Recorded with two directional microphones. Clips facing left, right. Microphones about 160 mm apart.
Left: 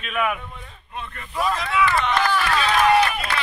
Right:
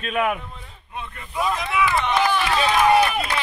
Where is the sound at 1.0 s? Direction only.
15° right (ahead or behind).